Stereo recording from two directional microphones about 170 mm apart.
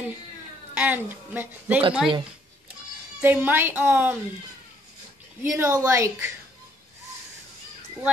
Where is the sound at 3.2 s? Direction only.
10° right (ahead or behind).